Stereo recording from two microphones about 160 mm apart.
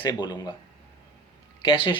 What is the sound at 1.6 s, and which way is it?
Speech, 35° left (ahead or behind).